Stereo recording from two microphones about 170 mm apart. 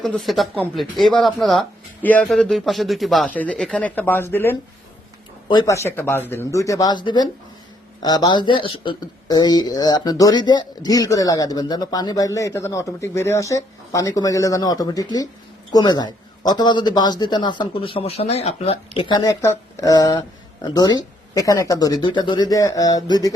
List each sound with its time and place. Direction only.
0.0 s speech: centre (ahead or behind); by 19.3 s 25° left (ahead or behind)
19.4 s speech: 15° left (ahead or behind)